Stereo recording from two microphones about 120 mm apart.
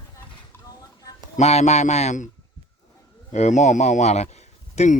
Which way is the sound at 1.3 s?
65° left (ahead or behind).